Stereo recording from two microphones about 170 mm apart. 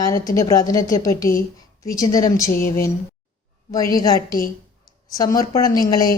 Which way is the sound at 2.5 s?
60° left (ahead or behind).